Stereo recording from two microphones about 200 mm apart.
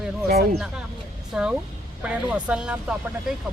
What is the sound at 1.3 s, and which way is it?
A man's voice, 5° right (ahead or behind).